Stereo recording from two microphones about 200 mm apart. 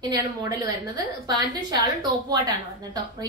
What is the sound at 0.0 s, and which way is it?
A woman's voice, 20° right (ahead or behind).